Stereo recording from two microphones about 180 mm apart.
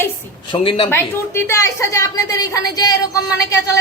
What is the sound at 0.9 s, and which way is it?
A woman's voice, 15° left (ahead or behind).